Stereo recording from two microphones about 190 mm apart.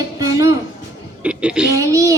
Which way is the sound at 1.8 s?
15° right (ahead or behind).